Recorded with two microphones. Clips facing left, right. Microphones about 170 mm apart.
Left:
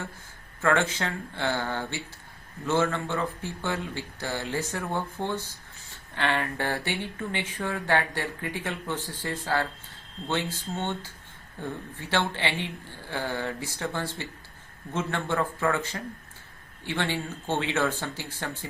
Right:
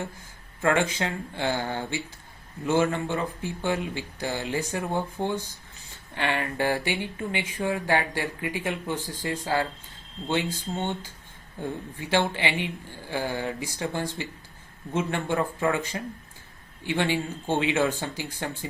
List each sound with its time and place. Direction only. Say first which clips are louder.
0.6 s speech: right 1 dB; 15° right (ahead or behind)